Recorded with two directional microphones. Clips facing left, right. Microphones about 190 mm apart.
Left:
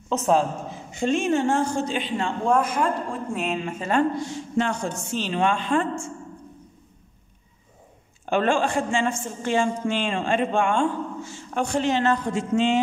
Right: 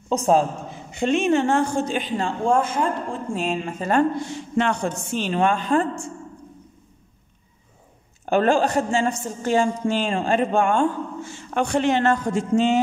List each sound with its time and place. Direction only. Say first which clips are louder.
0.9 s a man's voice: right 3 dB; 65° right (ahead or behind)
2.0 s a woman's voice: right 2 dB; 35° right (ahead or behind)
4.3 s a woman's voice: right 2 dB; 65° right (ahead or behind); by 6.1 s 35° right (ahead or behind)
8.3 s a woman's voice: right 3 dB; 40° right (ahead or behind)
11.2 s a man's voice: right 5 dB; 65° right (ahead or behind); by 12.7 s 45° right (ahead or behind)